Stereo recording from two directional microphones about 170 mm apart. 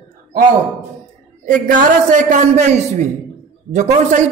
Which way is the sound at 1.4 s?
50° right (ahead or behind).